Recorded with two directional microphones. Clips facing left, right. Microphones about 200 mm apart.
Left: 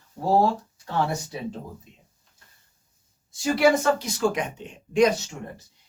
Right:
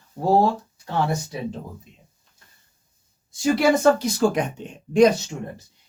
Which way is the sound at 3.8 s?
35° right (ahead or behind).